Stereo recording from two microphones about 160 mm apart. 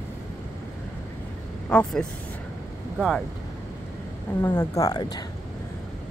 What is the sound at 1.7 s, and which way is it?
Speech, 5° left (ahead or behind).